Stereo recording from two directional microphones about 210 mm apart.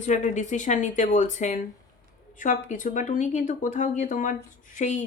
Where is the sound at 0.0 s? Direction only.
35° left (ahead or behind).